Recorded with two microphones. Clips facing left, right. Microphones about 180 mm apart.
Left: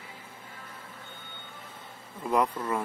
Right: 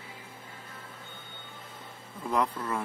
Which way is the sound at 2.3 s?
10° left (ahead or behind).